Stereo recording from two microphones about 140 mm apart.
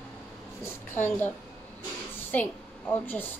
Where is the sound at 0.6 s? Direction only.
15° left (ahead or behind).